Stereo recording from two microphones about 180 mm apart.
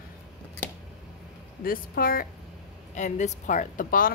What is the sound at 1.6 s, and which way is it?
Speech, 55° left (ahead or behind).